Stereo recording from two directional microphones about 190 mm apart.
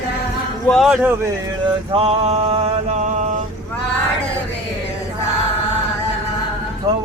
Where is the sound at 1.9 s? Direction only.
30° right (ahead or behind).